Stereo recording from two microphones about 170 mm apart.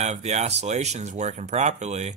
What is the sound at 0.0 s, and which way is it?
Speech, 40° right (ahead or behind).